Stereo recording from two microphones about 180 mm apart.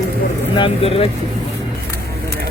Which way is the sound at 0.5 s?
30° left (ahead or behind).